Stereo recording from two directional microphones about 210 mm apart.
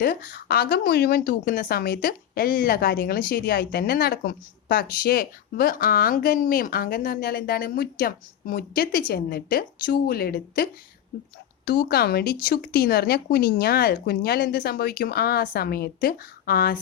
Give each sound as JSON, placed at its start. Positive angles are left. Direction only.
{"t": 0.0, "sound": "a woman's voice", "side_deg": 40}